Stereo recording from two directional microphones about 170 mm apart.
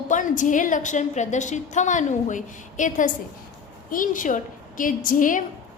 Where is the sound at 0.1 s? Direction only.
50° left (ahead or behind).